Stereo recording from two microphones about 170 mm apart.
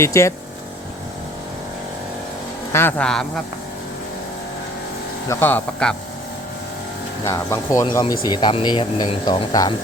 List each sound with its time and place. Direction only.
0.0 s speech: 15° left (ahead or behind)
2.7 s speech: 10° left (ahead or behind)
5.3 s speech: 10° left (ahead or behind)
7.3 s speech: 20° left (ahead or behind)